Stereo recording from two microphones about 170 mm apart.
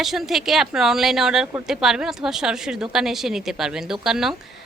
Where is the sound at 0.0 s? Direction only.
Centre (ahead or behind).